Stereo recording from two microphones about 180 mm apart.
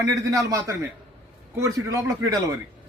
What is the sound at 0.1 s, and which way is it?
A man's voice, 20° right (ahead or behind).